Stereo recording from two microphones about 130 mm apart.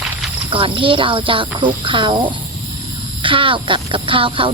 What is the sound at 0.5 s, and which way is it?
Speech, 40° right (ahead or behind).